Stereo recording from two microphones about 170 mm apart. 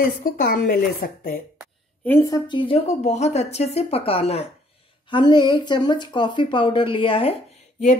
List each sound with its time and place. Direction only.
0.0 s a woman's voice: 55° left (ahead or behind)
2.0 s speech: 15° left (ahead or behind)
3.0 s a woman's voice: 40° left (ahead or behind)
5.1 s speech: 25° left (ahead or behind)